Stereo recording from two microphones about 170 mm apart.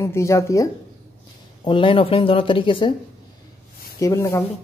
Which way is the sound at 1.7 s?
30° left (ahead or behind).